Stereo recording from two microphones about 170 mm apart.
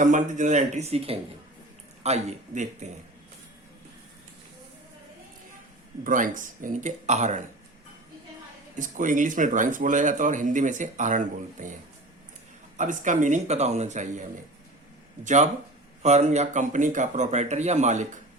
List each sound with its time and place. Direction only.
0.0 s a man's voice: 50° right (ahead or behind)
6.1 s speech: 50° right (ahead or behind)
8.8 s speech: 50° right (ahead or behind)